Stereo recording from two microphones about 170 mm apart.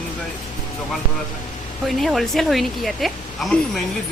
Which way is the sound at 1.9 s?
Centre (ahead or behind).